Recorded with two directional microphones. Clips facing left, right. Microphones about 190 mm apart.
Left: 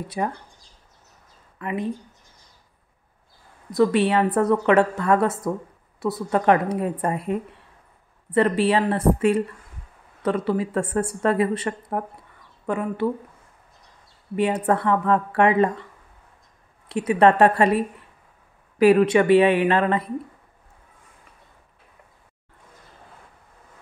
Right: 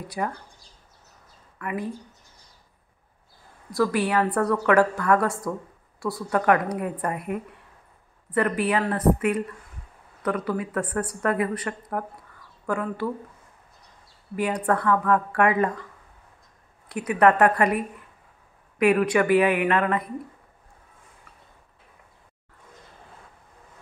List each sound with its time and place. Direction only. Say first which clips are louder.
0.2 s speech: left 2 dB; 25° left (ahead or behind)
1.6 s speech: left 3 dB; 20° left (ahead or behind)
3.7 s speech: left 4 dB; 25° left (ahead or behind)
14.3 s speech: left 3 dB; 25° left (ahead or behind)
16.9 s speech: left 2 dB; 25° left (ahead or behind)